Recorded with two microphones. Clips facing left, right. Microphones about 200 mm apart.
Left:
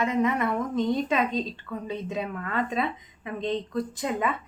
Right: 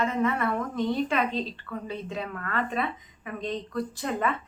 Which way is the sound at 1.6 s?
20° left (ahead or behind).